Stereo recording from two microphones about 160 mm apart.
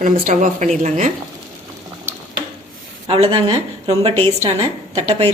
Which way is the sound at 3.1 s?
35° right (ahead or behind).